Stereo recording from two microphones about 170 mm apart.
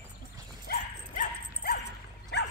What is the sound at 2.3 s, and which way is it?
Dog, 80° left.